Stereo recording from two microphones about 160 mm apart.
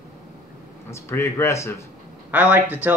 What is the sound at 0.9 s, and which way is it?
Speech, 15° left (ahead or behind).